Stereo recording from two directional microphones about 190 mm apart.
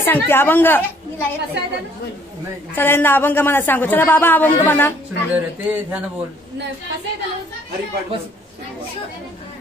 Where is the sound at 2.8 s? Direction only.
10° left (ahead or behind).